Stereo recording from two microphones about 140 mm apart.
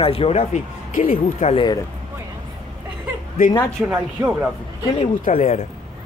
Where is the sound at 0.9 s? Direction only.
70° left (ahead or behind).